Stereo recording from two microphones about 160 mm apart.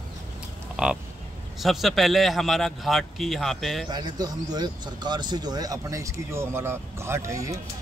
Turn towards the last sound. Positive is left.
turn(degrees=-20)  # may be behind; listen again after turning